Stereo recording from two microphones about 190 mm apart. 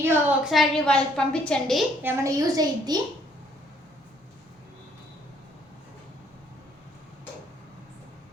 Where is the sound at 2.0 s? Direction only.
15° right (ahead or behind).